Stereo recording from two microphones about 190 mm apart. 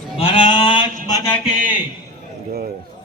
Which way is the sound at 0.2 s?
30° left (ahead or behind).